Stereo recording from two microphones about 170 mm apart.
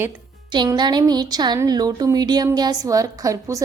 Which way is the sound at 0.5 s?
25° right (ahead or behind).